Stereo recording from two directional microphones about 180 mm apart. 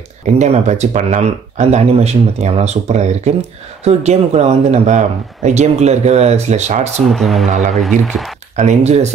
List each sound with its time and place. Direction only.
0.4 s speech: 40° right (ahead or behind)
7.1 s speech: centre (ahead or behind)
7.4 s speech: 40° right (ahead or behind)
7.7 s speech: centre (ahead or behind)
8.5 s speech: 40° right (ahead or behind)